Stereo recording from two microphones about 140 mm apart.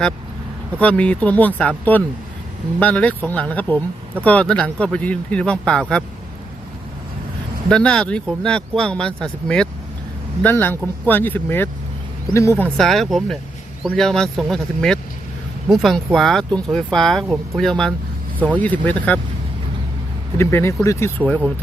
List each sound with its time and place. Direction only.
0.8 s speech: 10° left (ahead or behind)
7.7 s speech: 5° left (ahead or behind)
12.7 s speech: centre (ahead or behind)
20.4 s speech: 20° left (ahead or behind)
21.2 s speech: 5° left (ahead or behind)